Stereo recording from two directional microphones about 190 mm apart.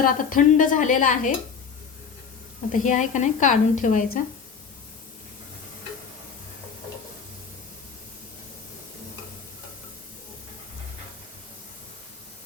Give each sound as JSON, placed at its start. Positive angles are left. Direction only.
{"t": 0.0, "sound": "a woman's voice", "side_deg": 45}
{"t": 2.7, "sound": "a woman's voice", "side_deg": 40}